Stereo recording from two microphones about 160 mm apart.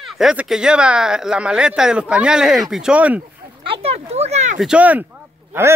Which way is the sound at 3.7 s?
40° right (ahead or behind).